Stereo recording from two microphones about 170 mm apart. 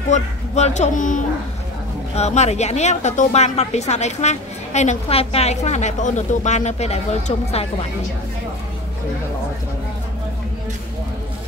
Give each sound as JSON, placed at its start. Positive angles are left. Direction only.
{"t": 0.1, "sound": "a woman's voice", "side_deg": 45}